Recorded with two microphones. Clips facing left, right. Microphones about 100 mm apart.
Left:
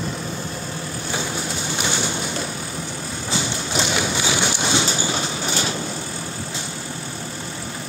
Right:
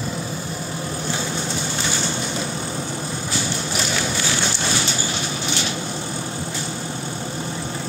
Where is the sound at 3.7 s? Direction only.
20° left (ahead or behind).